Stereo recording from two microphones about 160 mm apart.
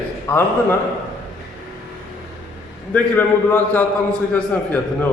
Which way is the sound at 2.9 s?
10° left (ahead or behind).